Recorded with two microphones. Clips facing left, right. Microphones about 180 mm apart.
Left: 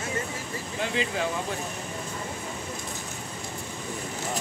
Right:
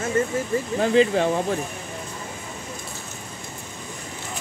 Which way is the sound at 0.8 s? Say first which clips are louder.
Right 10 dB; 35° right (ahead or behind).